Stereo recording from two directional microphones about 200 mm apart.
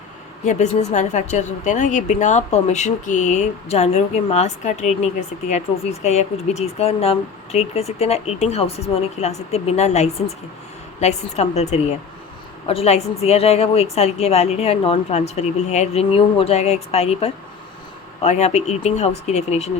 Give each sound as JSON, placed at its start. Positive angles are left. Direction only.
{"t": 0.4, "sound": "speech", "side_deg": 35}